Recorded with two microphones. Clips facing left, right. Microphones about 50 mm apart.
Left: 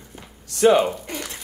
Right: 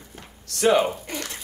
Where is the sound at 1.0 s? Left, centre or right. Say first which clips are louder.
Left 1 dB; centre.